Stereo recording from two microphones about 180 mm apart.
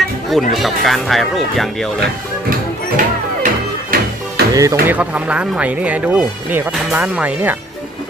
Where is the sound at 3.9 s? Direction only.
55° right (ahead or behind).